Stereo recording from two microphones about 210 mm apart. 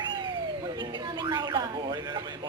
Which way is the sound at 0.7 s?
20° right (ahead or behind).